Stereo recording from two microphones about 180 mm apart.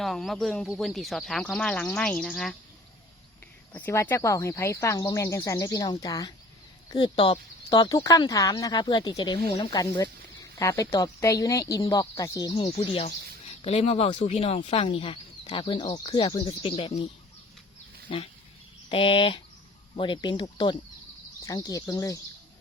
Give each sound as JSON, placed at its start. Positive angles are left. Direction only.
{"t": 0.0, "sound": "speech", "side_deg": 0}
{"t": 3.7, "sound": "speech", "side_deg": 10}
{"t": 18.1, "sound": "speech", "side_deg": 30}